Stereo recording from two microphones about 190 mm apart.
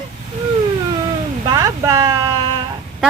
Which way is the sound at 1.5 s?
20° right (ahead or behind).